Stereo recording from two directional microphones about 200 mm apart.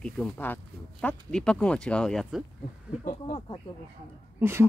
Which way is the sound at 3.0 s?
40° left (ahead or behind).